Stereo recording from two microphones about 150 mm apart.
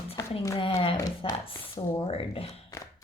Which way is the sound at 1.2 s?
35° left (ahead or behind).